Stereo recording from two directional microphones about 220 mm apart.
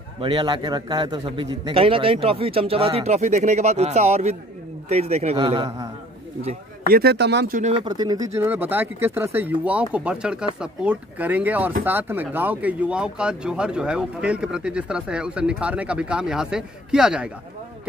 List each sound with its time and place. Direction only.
0.2 s a man's voice: 20° right (ahead or behind)
6.9 s speech: 45° right (ahead or behind)
7.7 s speech: 20° right (ahead or behind); by 17.3 s 5° right (ahead or behind)